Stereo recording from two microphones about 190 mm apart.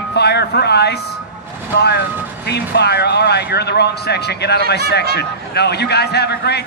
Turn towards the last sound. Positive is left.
turn(degrees=60)  # may be behind; listen again after turning